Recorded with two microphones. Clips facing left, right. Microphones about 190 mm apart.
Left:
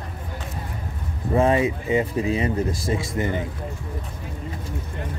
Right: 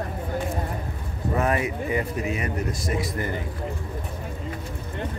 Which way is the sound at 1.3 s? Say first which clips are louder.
Left 5 dB; 25° left (ahead or behind).